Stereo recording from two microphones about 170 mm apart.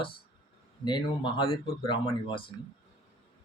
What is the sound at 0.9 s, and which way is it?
Speech, 25° left (ahead or behind).